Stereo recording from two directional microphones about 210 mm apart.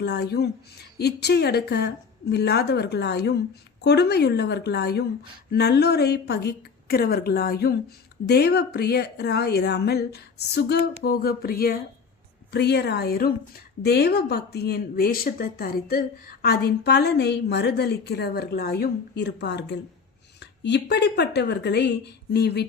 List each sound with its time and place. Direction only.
0.0 s speech: 50° left (ahead or behind)